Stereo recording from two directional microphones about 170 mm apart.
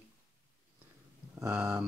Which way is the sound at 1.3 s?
20° right (ahead or behind).